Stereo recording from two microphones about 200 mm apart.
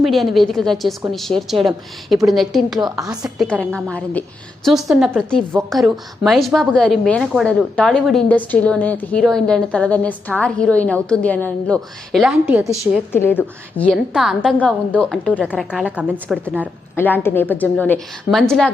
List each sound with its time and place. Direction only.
0.0 s a woman's voice: centre (ahead or behind)
2.7 s a woman's voice: 20° right (ahead or behind)
3.0 s a woman's voice: centre (ahead or behind)
13.1 s a woman's voice: 10° left (ahead or behind); by 16.6 s 5° right (ahead or behind)
16.9 s a woman's voice: 10° left (ahead or behind)